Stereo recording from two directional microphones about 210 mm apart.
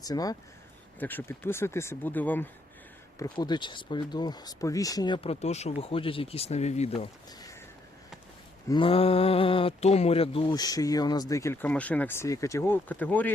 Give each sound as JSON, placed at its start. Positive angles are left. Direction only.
{"t": 0.0, "sound": "speech", "side_deg": 15}
{"t": 3.2, "sound": "speech", "side_deg": 20}
{"t": 8.7, "sound": "speech", "side_deg": 25}